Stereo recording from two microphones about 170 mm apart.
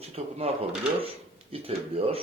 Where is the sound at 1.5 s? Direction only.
35° right (ahead or behind).